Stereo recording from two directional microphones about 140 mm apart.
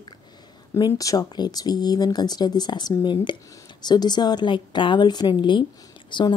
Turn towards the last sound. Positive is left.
turn(degrees=35)  # may be behind; listen again after turning